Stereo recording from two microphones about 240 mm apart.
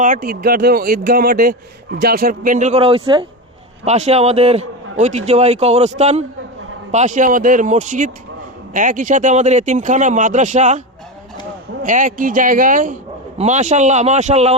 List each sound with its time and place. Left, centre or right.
0.0 s a man's voice: right